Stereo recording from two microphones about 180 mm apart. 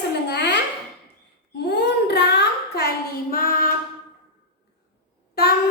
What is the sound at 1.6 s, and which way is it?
Child singing, 65° left (ahead or behind).